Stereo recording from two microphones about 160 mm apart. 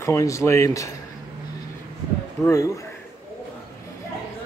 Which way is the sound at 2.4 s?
5° left (ahead or behind).